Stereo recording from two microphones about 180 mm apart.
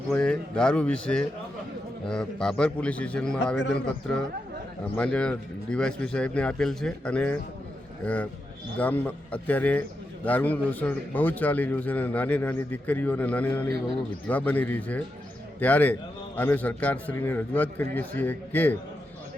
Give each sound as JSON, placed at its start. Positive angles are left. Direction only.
{"t": 0.1, "sound": "a man's voice", "side_deg": 5}
{"t": 4.9, "sound": "a man's voice", "side_deg": 5}